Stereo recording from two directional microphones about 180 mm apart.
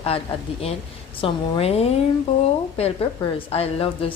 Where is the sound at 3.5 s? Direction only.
35° left (ahead or behind).